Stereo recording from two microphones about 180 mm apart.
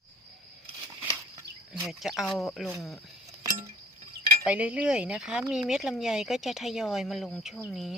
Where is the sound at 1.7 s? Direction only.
Centre (ahead or behind).